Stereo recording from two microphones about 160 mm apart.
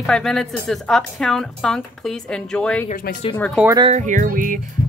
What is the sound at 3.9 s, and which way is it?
Music, 50° right (ahead or behind).